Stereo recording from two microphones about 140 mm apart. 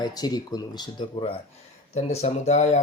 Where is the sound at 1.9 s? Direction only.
50° left (ahead or behind).